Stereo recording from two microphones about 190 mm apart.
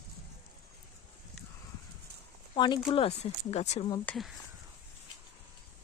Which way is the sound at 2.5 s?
25° left (ahead or behind).